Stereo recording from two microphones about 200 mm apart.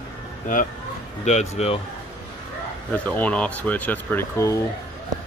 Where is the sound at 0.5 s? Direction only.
40° left (ahead or behind).